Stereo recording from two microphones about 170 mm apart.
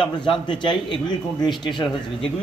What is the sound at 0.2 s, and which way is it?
A man's voice, 30° left (ahead or behind).